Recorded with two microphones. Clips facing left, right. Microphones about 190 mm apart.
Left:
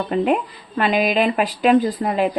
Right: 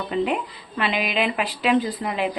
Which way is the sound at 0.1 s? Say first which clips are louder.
Left 4 dB; 50° left (ahead or behind).